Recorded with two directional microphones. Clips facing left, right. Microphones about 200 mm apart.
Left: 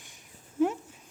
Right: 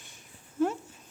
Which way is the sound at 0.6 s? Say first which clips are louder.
Left 1 dB; 15° left (ahead or behind).